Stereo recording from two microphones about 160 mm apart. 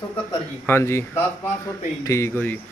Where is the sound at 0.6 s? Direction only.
15° left (ahead or behind).